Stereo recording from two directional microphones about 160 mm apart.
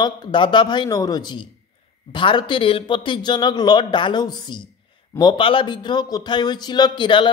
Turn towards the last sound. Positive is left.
turn(degrees=30)  # may be behind; listen again after turning